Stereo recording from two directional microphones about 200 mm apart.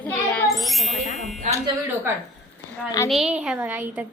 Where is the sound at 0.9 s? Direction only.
35° left (ahead or behind).